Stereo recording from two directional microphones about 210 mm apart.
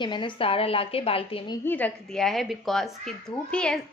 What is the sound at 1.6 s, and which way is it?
A woman's voice, 10° left (ahead or behind).